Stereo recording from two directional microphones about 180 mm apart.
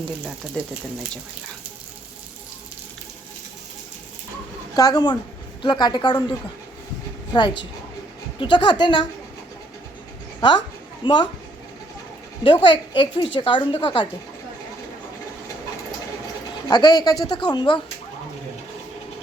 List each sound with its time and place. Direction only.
0.6 s speech: 5° left (ahead or behind)
4.7 s a child's voice: 20° left (ahead or behind)
7.3 s a child's voice: 25° left (ahead or behind)
11.0 s a child's voice: 25° left (ahead or behind)
12.6 s a child's voice: 25° left (ahead or behind)
16.6 s a child's voice: 25° left (ahead or behind)